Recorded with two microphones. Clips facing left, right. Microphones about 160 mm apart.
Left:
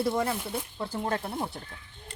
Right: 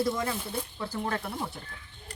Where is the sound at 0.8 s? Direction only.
25° left (ahead or behind).